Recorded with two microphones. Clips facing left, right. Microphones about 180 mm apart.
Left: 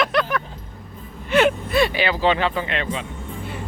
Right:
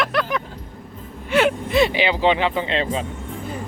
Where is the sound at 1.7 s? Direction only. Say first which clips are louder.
Right 2 dB; 20° right (ahead or behind).